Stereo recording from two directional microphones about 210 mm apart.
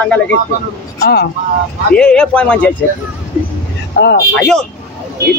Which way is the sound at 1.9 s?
5° left (ahead or behind).